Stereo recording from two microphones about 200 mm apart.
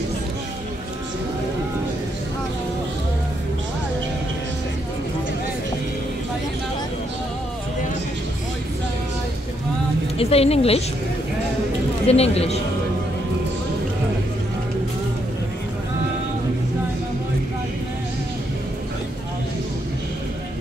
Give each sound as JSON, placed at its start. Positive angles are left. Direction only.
{"t": 10.1, "sound": "a woman's voice", "side_deg": 30}
{"t": 12.1, "sound": "a man's voice", "side_deg": 30}